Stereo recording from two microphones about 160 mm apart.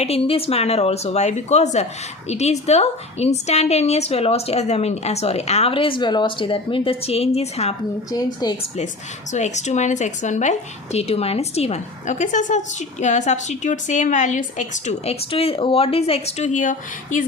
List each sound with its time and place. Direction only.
0.0 s a woman's voice: 40° left (ahead or behind)
8.1 s speech: 25° left (ahead or behind)
9.3 s speech: 45° left (ahead or behind)